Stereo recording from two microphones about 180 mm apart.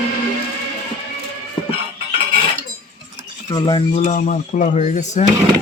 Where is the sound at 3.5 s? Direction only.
20° left (ahead or behind).